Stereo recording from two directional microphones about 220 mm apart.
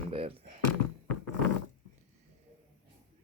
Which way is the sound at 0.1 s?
25° right (ahead or behind).